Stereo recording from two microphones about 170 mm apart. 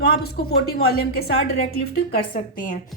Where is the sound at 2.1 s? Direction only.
55° left (ahead or behind).